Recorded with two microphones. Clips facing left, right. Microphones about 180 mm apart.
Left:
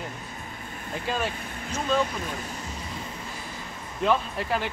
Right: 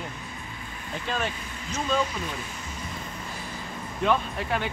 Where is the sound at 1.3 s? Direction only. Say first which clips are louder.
Left 2 dB; 50° left (ahead or behind).